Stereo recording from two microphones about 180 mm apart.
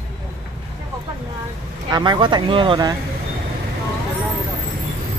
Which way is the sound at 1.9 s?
25° right (ahead or behind).